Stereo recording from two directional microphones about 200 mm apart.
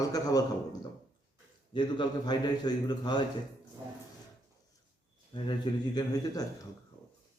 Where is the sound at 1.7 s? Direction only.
20° left (ahead or behind).